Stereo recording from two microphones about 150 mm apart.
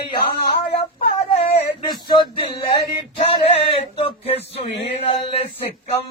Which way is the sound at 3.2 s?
40° left (ahead or behind).